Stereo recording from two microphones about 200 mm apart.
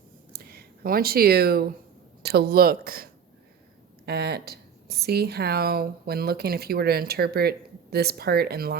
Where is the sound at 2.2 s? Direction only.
50° right (ahead or behind).